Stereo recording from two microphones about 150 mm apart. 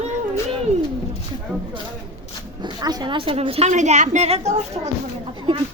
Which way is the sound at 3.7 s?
55° right (ahead or behind).